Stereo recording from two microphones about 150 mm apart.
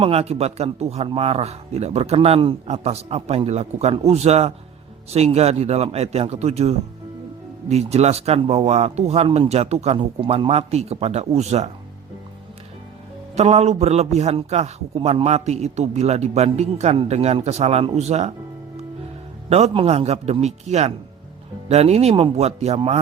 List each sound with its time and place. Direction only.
0.0 s a man's voice: 40° right (ahead or behind)
13.3 s a man's voice: 45° right (ahead or behind)
19.5 s a man's voice: 45° right (ahead or behind)